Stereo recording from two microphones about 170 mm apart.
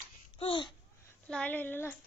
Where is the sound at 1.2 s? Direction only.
10° left (ahead or behind).